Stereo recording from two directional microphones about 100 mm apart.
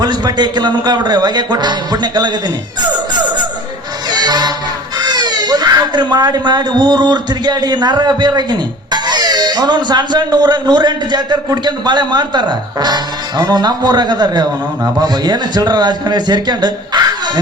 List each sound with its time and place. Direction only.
0.0 s speech: 45° right (ahead or behind)
4.2 s music: 45° right (ahead or behind)
4.9 s speech: 45° right (ahead or behind)